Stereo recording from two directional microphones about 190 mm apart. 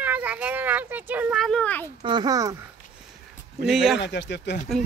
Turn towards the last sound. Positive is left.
turn(degrees=65)  # may be behind; listen again after turning